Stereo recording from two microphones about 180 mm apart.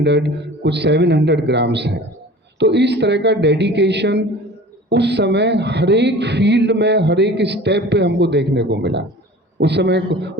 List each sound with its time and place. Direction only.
0.0 s speech: 75° right (ahead or behind)